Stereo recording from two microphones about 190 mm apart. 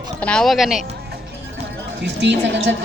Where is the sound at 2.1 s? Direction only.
65° right (ahead or behind).